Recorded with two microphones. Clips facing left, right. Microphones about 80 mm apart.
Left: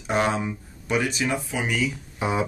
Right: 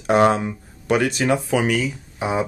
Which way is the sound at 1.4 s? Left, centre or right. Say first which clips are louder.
Right 8 dB; right.